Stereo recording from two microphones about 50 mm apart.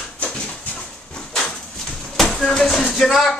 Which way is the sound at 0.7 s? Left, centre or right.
Centre.